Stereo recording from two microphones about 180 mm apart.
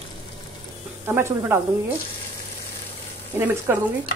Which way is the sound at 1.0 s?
15° right (ahead or behind).